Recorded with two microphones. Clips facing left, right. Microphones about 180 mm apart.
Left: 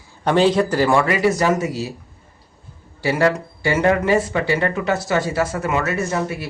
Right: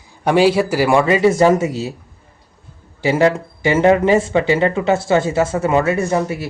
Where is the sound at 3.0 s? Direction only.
20° right (ahead or behind).